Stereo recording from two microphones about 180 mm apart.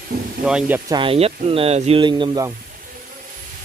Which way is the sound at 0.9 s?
30° right (ahead or behind).